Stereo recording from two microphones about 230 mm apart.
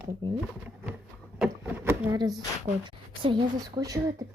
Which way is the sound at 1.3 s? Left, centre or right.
Centre.